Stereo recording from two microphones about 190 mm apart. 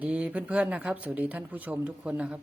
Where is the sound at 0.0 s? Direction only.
5° right (ahead or behind).